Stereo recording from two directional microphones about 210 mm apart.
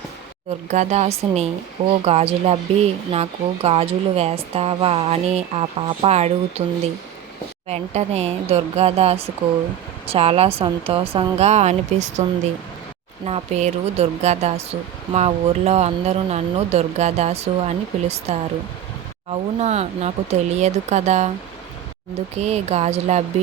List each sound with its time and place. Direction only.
0.7 s speech: 35° right (ahead or behind)
13.2 s speech: 30° right (ahead or behind)
22.4 s speech: 30° right (ahead or behind)